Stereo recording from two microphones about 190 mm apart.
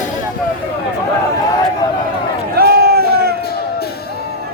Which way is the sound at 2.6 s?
55° right (ahead or behind).